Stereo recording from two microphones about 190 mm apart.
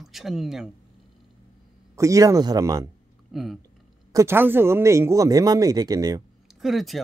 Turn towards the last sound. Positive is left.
turn(degrees=0)  # may be behind; listen again after turning